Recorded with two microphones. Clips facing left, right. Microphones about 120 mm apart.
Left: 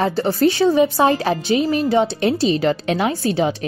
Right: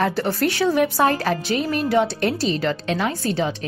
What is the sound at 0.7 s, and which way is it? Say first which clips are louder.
Speech: left 3 dB; 15° left (ahead or behind).